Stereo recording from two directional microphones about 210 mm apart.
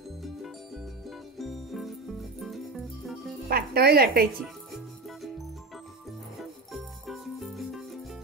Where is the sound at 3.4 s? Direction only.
45° right (ahead or behind).